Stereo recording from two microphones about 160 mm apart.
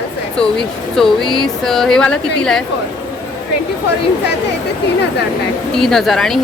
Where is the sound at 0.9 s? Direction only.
Centre (ahead or behind).